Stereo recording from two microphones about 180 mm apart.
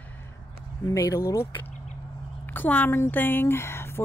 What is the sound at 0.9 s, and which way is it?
A woman's voice, 15° left (ahead or behind).